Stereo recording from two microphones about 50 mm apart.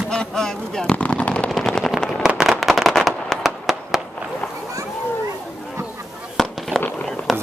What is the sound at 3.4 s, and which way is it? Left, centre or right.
Fireworks, centre.